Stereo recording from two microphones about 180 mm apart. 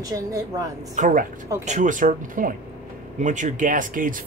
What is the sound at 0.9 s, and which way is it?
Speech, 45° right (ahead or behind).